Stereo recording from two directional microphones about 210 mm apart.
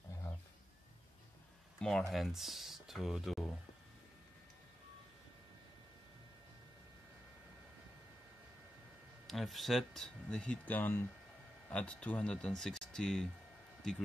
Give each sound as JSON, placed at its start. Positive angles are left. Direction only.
{"t": 1.8, "sound": "speech", "side_deg": 5}
{"t": 9.3, "sound": "speech", "side_deg": 0}